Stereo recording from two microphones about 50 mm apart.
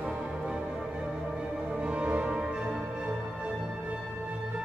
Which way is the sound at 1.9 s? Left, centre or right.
Right.